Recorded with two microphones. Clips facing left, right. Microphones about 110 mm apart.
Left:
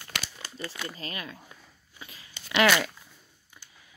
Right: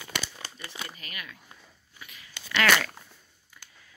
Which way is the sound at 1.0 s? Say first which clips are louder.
Left 5 dB; 30° left (ahead or behind).